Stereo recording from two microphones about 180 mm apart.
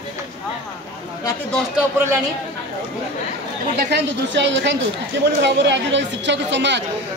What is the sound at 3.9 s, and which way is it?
A woman's voice, 75° right (ahead or behind).